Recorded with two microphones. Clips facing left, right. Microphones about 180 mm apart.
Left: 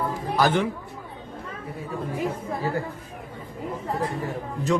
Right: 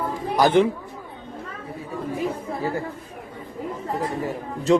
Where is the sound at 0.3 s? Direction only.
20° right (ahead or behind).